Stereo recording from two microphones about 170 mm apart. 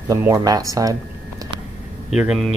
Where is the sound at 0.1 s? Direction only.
20° right (ahead or behind).